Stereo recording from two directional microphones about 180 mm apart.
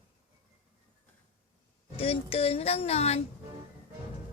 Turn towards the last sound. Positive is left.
turn(degrees=35)  # may be behind; listen again after turning